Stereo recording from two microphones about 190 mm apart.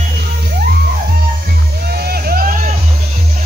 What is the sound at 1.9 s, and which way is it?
Music, 55° right (ahead or behind).